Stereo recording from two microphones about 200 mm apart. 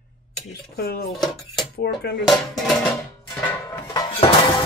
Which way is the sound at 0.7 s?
50° left (ahead or behind).